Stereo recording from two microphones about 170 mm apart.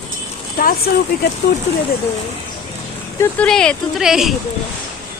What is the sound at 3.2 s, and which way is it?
Speech, 5° left (ahead or behind).